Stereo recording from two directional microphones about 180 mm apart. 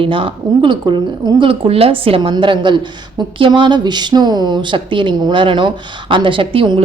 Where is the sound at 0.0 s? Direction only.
30° right (ahead or behind).